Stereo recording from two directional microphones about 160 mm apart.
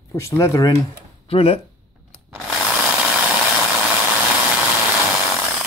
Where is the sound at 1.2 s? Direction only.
35° left (ahead or behind).